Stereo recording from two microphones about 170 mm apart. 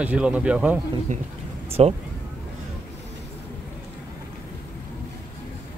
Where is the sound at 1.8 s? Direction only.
35° right (ahead or behind).